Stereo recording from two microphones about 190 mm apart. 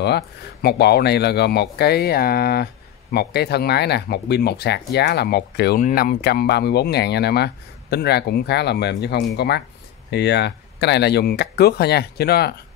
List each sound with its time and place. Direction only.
0.0 s speech: 60° left (ahead or behind)
5.8 s speech: 45° left (ahead or behind)